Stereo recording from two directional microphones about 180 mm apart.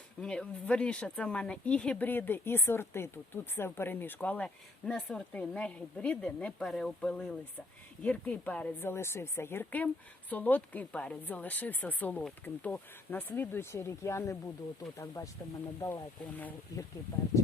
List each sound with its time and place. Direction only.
0.2 s a woman's voice: 5° left (ahead or behind)
16.4 s a woman's voice: 10° left (ahead or behind)